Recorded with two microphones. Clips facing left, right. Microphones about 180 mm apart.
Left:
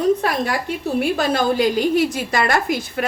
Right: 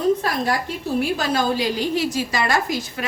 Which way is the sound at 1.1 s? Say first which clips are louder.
Left 3 dB; 55° left (ahead or behind).